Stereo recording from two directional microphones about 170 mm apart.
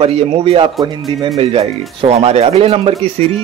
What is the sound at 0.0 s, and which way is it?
Speech, 35° right (ahead or behind).